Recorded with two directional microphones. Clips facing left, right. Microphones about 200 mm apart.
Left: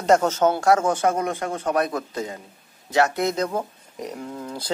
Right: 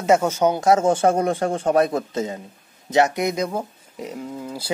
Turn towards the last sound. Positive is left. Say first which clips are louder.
# right 1 dB
turn(degrees=-10)  # may be behind; listen again after turning